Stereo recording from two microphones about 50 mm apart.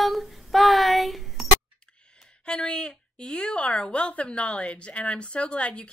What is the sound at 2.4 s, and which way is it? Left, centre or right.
A woman's voice, centre.